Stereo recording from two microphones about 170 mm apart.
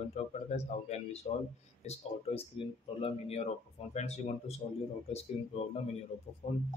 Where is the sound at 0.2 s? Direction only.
40° left (ahead or behind).